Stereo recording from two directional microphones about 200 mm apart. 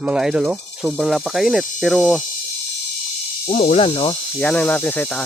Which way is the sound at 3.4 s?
30° left (ahead or behind).